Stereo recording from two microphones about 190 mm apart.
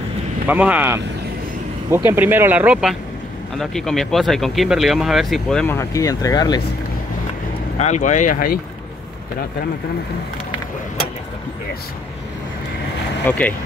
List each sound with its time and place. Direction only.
0.5 s speech: 10° right (ahead or behind); by 6.6 s 20° left (ahead or behind)
7.8 s speech: 40° left (ahead or behind)
13.3 s speech: 10° left (ahead or behind)